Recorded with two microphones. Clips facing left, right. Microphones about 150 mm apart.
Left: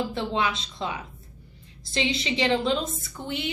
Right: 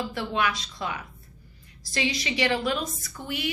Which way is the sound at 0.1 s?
25° left (ahead or behind).